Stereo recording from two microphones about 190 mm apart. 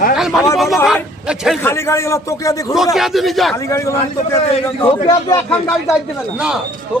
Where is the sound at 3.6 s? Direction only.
15° left (ahead or behind).